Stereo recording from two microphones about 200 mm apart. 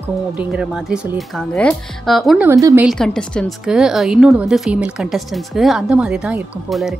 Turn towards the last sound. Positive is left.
turn(degrees=0)  # may be behind; listen again after turning